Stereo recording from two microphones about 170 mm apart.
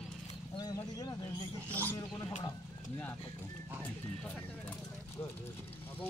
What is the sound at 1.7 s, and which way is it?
Speech, 10° left (ahead or behind).